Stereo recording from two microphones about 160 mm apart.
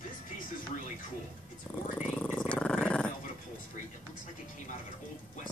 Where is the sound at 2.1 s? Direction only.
10° left (ahead or behind).